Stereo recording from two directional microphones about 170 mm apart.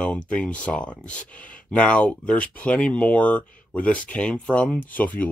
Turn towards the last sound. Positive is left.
turn(degrees=10)  # may be behind; listen again after turning